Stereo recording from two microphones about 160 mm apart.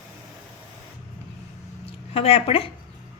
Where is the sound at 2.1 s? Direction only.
40° left (ahead or behind).